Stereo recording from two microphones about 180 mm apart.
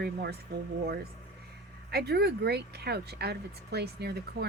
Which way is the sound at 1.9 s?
65° right (ahead or behind).